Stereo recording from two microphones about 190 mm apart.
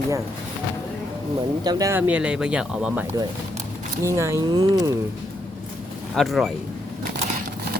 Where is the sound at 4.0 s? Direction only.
15° right (ahead or behind).